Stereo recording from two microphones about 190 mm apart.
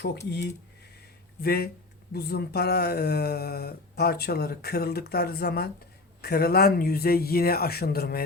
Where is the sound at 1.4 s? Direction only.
55° left (ahead or behind).